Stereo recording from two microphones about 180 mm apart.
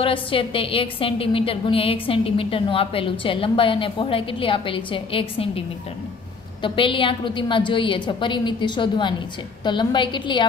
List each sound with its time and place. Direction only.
0.0 s a woman's voice: 30° left (ahead or behind)
6.6 s a woman's voice: 30° left (ahead or behind)